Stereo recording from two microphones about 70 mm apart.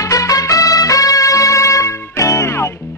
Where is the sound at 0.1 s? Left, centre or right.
Left.